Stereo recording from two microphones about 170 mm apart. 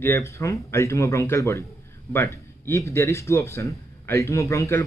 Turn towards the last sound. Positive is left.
turn(degrees=15)  # may be behind; listen again after turning